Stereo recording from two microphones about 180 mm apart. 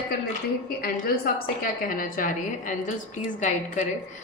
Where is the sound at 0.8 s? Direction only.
55° left (ahead or behind).